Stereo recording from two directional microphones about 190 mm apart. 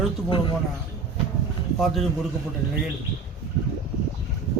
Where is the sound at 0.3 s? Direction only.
25° left (ahead or behind).